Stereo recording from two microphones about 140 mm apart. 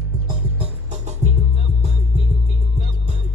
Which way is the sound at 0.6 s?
50° right (ahead or behind).